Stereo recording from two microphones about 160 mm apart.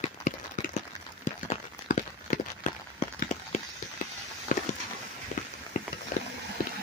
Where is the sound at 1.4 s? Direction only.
50° left (ahead or behind).